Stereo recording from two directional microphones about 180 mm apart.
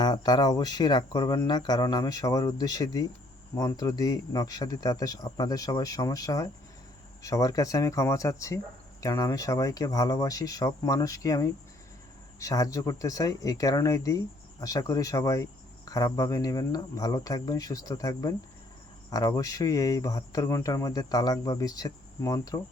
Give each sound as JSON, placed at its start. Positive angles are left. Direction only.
{"t": 0.0, "sound": "speech", "side_deg": 25}